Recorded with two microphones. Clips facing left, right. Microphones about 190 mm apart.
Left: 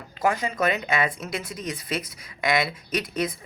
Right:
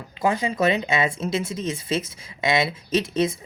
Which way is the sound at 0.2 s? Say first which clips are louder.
Right 2 dB; 20° right (ahead or behind).